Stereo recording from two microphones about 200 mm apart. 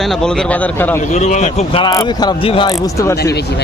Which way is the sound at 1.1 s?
35° left (ahead or behind).